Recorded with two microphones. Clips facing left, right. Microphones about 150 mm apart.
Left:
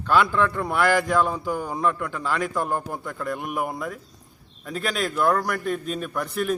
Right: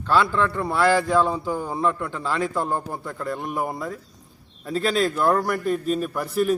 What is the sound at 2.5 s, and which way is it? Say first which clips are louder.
Speech: right 1 dB; 20° right (ahead or behind).